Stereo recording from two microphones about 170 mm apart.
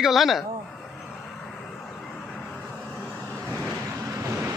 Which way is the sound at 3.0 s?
5° left (ahead or behind).